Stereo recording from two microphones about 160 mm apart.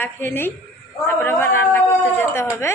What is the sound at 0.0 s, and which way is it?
A woman's voice, 15° left (ahead or behind).